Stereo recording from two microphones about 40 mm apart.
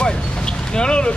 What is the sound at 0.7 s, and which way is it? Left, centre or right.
Speech, left.